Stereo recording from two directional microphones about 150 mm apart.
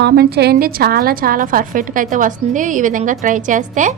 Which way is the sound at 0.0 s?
90° right.